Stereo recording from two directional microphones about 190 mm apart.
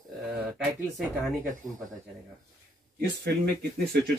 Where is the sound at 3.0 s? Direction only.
55° right (ahead or behind).